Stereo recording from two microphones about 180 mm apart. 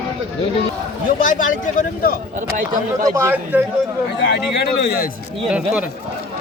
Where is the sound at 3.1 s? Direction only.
10° right (ahead or behind).